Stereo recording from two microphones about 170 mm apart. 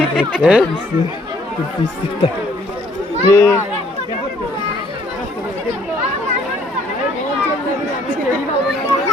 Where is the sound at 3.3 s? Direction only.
15° left (ahead or behind).